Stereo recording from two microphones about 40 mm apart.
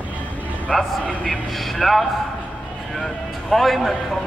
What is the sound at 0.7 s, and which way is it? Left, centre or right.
Speech, left.